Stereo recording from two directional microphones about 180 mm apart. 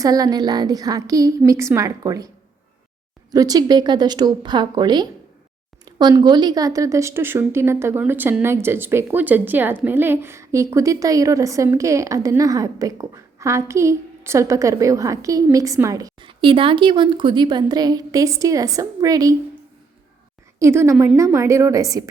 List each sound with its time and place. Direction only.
0.0 s a woman's voice: 20° right (ahead or behind)
3.3 s a woman's voice: 20° right (ahead or behind)
20.6 s a woman's voice: 15° right (ahead or behind)